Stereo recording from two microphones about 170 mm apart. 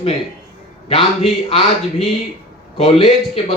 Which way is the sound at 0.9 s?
35° left (ahead or behind).